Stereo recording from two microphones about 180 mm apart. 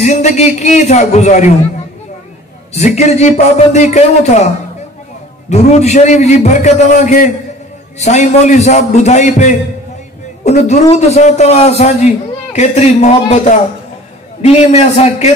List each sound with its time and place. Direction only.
0.0 s a man's voice: 40° left (ahead or behind)
2.7 s a man's voice: 35° left (ahead or behind)
5.5 s a man's voice: 40° left (ahead or behind)
14.4 s a man's voice: 35° left (ahead or behind)